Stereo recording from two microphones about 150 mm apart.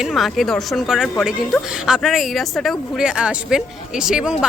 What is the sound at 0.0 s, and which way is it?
Speech, centre (ahead or behind).